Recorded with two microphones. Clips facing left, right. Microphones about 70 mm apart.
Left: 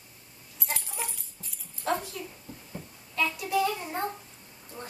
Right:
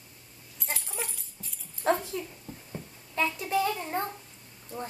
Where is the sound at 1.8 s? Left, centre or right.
Right.